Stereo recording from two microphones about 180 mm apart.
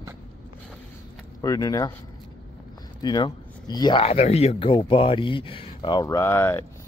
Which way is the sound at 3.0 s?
25° left (ahead or behind).